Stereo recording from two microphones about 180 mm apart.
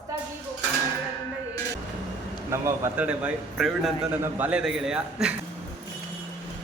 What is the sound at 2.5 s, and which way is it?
A man's voice, 15° right (ahead or behind).